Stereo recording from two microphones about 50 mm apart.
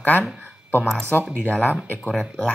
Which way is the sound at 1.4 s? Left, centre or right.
Left.